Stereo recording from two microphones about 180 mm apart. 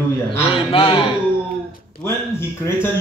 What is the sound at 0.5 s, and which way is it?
Speech, 30° left (ahead or behind).